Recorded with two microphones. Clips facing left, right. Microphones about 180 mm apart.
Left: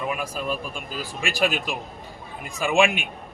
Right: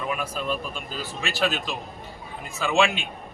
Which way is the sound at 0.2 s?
5° left (ahead or behind).